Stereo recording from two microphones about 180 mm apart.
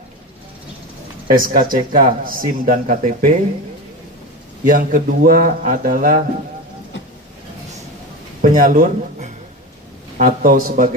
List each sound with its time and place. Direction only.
1.4 s speech: 50° right (ahead or behind)
4.6 s speech: 50° right (ahead or behind)
8.4 s a sound: 50° right (ahead or behind)
10.1 s speech: 50° right (ahead or behind)